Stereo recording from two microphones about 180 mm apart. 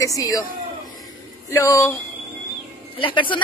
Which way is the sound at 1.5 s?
15° left (ahead or behind).